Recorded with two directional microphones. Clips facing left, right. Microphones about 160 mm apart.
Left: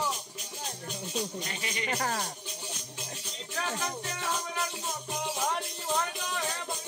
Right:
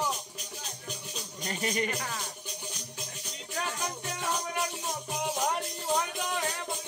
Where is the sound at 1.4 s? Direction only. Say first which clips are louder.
Right 5 dB; 40° right (ahead or behind).